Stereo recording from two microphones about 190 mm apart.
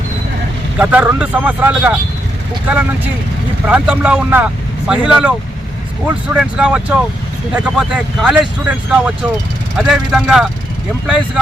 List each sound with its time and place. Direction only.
0.8 s speech: 10° right (ahead or behind)
3.7 s speech: 5° right (ahead or behind)
6.3 s speech: 5° right (ahead or behind)